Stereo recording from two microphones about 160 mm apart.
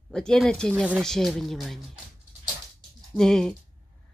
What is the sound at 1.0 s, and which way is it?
Speech, centre (ahead or behind).